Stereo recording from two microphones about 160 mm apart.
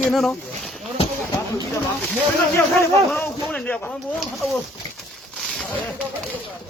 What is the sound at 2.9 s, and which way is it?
Speech, centre (ahead or behind).